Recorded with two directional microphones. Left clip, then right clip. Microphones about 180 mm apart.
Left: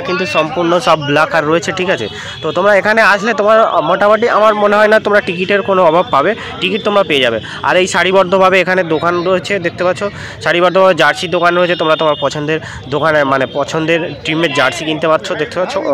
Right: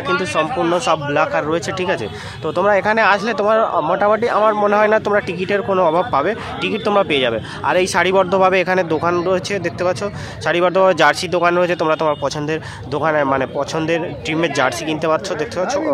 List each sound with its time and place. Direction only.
0.2 s a man's voice: 15° left (ahead or behind)